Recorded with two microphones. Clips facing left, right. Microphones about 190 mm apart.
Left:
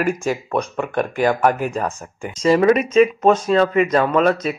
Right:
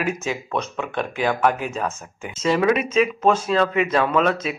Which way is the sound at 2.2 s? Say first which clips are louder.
Left 5 dB; 5° right (ahead or behind).